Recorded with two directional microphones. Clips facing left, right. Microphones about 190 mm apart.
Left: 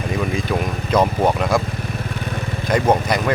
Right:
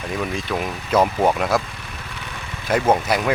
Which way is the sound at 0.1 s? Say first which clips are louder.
Left 3 dB; centre (ahead or behind).